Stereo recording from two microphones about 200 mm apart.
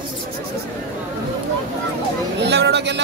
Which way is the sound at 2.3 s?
55° right (ahead or behind).